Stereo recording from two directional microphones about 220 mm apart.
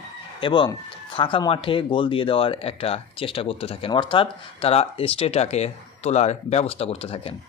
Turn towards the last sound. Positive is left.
turn(degrees=25)  # may be behind; listen again after turning